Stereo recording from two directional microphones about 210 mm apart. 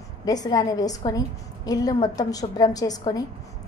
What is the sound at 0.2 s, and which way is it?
A woman's voice, 20° left (ahead or behind).